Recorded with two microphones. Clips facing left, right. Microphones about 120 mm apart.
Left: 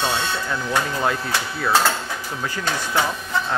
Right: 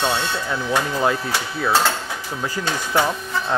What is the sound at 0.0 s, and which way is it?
Speech, 5° right (ahead or behind).